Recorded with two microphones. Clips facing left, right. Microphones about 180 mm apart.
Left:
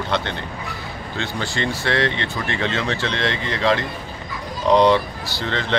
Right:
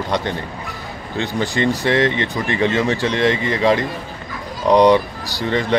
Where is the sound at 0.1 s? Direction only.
15° right (ahead or behind).